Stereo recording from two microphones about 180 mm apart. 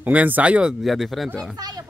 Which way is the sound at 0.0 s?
10° right (ahead or behind).